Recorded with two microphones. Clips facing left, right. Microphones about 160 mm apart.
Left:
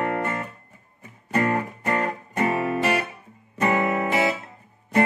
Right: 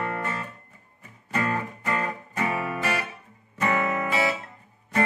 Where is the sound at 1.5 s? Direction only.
25° left (ahead or behind).